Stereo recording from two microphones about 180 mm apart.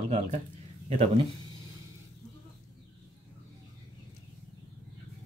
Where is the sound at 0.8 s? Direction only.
35° right (ahead or behind).